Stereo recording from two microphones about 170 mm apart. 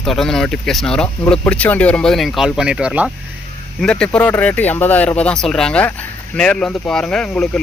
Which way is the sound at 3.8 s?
5° left (ahead or behind).